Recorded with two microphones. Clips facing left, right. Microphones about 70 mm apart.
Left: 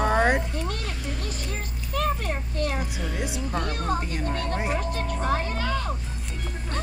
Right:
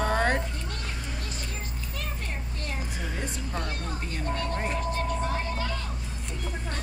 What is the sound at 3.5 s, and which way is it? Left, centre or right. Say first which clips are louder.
Speech: left 10 dB; left.